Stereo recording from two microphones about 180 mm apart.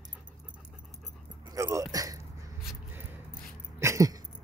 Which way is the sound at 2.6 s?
Centre (ahead or behind).